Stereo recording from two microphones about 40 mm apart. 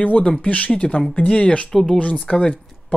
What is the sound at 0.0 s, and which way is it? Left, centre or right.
Speech, left.